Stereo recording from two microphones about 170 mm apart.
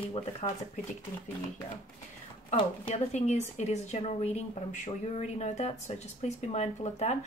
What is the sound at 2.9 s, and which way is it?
Speech, 40° left (ahead or behind).